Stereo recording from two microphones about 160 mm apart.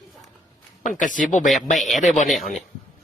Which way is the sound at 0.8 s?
55° left (ahead or behind).